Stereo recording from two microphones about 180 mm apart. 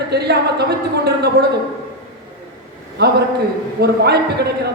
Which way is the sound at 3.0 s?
60° right (ahead or behind).